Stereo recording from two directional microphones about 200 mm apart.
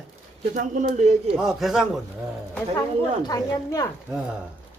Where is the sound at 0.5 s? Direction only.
40° right (ahead or behind).